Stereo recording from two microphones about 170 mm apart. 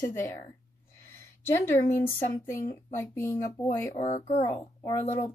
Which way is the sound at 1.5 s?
15° left (ahead or behind).